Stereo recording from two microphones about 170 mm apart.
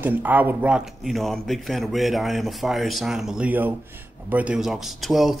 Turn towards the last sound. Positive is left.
turn(degrees=0)  # may be behind; listen again after turning